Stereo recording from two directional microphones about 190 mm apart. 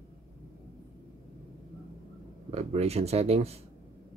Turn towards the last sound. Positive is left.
turn(degrees=-35)  # may be behind; listen again after turning